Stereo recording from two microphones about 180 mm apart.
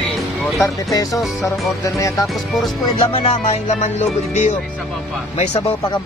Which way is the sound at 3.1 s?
35° left (ahead or behind).